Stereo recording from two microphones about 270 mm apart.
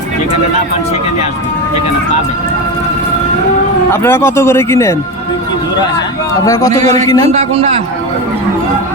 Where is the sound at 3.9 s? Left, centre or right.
Centre.